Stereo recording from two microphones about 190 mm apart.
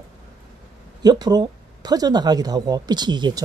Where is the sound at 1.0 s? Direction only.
20° right (ahead or behind).